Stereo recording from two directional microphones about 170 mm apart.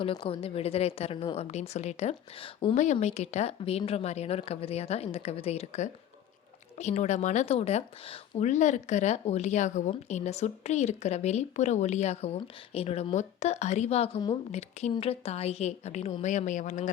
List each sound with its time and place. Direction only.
0.0 s speech: 30° left (ahead or behind)
2.7 s speech: 45° left (ahead or behind)